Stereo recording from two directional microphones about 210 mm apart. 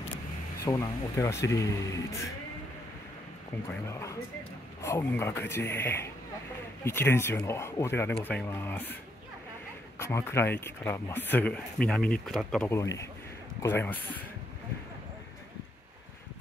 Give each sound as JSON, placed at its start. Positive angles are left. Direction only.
{"t": 0.7, "sound": "speech", "side_deg": 15}
{"t": 3.9, "sound": "speech", "side_deg": 15}
{"t": 9.9, "sound": "speech", "side_deg": 10}